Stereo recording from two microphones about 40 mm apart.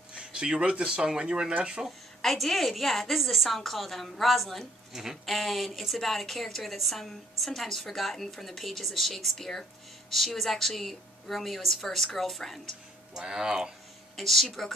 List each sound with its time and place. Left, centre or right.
0.1 s a sound: right
0.8 s speech: right
1.9 s speech: centre
13.1 s speech: centre
14.1 s speech: centre